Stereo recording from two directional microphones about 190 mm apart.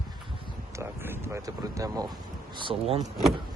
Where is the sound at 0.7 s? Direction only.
15° right (ahead or behind); by 3.0 s 30° right (ahead or behind).